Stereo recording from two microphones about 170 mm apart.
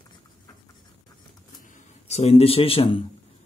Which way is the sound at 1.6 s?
45° left (ahead or behind).